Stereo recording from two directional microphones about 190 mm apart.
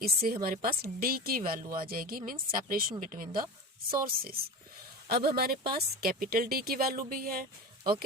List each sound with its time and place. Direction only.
0.0 s speech: 50° right (ahead or behind)